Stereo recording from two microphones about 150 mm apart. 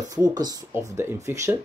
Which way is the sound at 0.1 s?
25° right (ahead or behind).